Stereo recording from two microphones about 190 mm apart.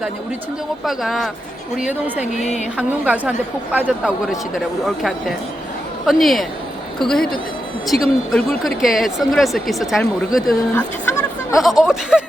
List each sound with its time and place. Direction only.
0.9 s a woman's voice: centre (ahead or behind)
2.4 s a sound: 40° left (ahead or behind)
2.7 s a woman's voice: 5° right (ahead or behind)